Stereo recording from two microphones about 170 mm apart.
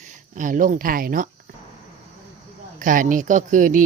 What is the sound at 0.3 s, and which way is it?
Speech, 50° right (ahead or behind).